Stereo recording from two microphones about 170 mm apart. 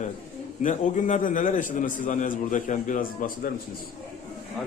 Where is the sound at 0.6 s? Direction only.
45° left (ahead or behind).